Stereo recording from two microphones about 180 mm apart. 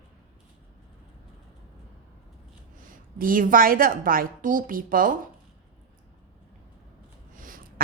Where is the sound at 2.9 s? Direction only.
50° right (ahead or behind).